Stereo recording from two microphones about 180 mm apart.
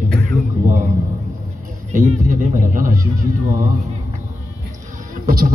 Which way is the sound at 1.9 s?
50° right (ahead or behind).